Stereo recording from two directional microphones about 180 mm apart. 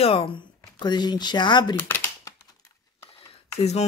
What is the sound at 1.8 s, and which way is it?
Speech, 10° left (ahead or behind).